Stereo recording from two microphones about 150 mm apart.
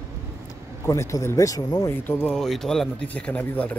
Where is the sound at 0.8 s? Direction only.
20° left (ahead or behind).